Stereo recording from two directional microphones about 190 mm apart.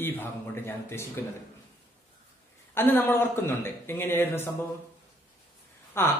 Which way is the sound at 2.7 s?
10° left (ahead or behind).